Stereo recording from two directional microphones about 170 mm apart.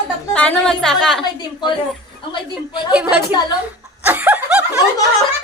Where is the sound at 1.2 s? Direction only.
25° left (ahead or behind).